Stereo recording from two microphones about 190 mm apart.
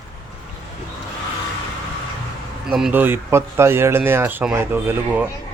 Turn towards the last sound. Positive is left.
turn(degrees=-10)  # may be behind; listen again after turning